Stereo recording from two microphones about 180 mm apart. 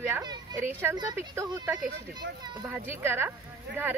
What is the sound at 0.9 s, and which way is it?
Speech, 15° right (ahead or behind).